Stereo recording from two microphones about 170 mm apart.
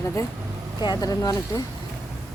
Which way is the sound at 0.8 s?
25° left (ahead or behind).